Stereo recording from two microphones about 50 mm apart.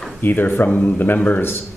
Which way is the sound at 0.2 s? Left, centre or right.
Left.